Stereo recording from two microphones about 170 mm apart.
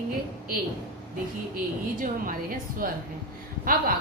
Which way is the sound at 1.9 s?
55° right (ahead or behind).